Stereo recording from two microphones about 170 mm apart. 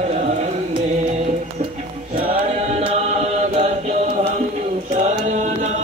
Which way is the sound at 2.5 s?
40° right (ahead or behind).